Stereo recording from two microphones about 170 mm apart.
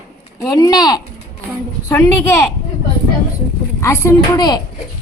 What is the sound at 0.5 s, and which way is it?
Speech, 20° left (ahead or behind).